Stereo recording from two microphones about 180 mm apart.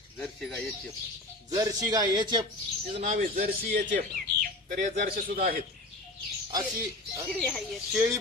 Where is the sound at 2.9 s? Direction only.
40° right (ahead or behind).